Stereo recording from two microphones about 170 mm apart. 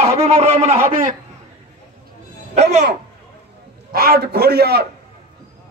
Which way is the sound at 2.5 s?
40° right (ahead or behind).